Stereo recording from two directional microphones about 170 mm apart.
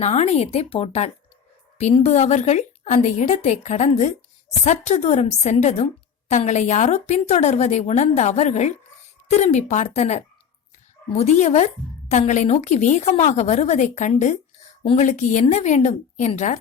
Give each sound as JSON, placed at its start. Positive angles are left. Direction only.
{"t": 0.0, "sound": "a woman's voice", "side_deg": 40}